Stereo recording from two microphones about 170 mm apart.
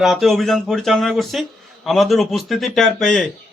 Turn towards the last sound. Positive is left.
turn(degrees=0)  # may be behind; listen again after turning